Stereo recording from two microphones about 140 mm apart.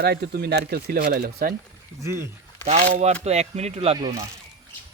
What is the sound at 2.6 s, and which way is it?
Speech, 50° right (ahead or behind).